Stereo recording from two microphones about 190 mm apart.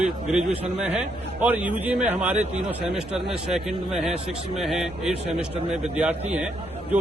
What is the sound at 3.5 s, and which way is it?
A man's voice, centre (ahead or behind).